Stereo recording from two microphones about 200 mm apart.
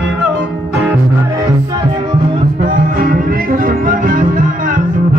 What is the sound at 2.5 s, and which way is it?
Music, 45° right (ahead or behind).